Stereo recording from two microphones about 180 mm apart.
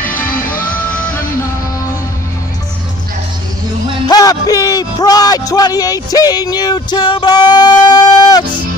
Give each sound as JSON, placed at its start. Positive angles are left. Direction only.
{"t": 0.0, "sound": "music", "side_deg": 10}
{"t": 4.1, "sound": "speech", "side_deg": 20}
{"t": 6.1, "sound": "music", "side_deg": 20}